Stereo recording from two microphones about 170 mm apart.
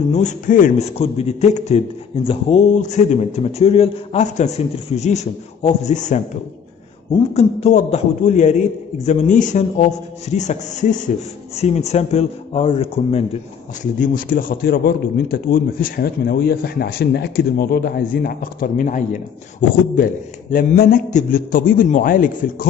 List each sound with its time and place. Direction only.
0.1 s a man's voice: 45° left (ahead or behind)
7.3 s a man's voice: 40° left (ahead or behind)
13.9 s a man's voice: 50° left (ahead or behind)
20.5 s a man's voice: 60° left (ahead or behind)